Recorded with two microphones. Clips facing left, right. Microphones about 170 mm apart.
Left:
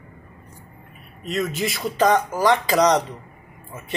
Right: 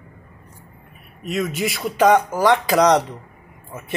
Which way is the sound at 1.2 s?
5° right (ahead or behind).